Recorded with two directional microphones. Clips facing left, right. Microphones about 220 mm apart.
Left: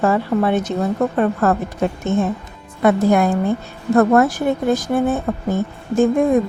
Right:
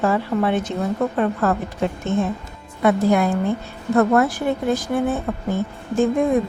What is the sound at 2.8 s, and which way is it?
A woman's voice, 45° left (ahead or behind).